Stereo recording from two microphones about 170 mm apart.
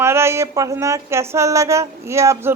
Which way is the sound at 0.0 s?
15° right (ahead or behind).